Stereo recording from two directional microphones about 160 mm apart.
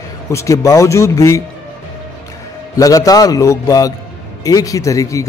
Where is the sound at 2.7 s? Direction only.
20° left (ahead or behind).